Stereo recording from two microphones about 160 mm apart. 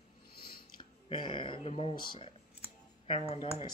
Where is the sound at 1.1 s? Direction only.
30° left (ahead or behind).